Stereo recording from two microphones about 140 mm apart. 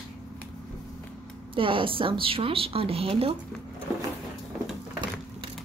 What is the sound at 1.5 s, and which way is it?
A woman's voice, 40° right (ahead or behind).